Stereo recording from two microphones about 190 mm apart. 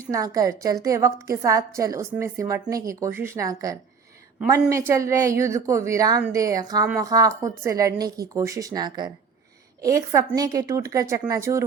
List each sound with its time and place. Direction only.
0.0 s a woman's voice: 20° right (ahead or behind)
4.9 s a woman's voice: 15° right (ahead or behind)